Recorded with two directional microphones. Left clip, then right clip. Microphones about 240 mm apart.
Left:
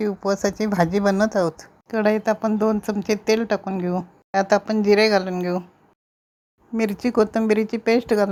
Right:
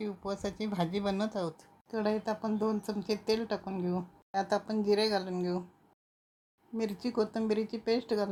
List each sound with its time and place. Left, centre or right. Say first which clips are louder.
0.0 s speech: left 15 dB; left
6.7 s speech: left 12 dB; left